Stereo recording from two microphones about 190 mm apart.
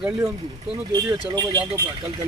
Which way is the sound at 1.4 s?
20° right (ahead or behind).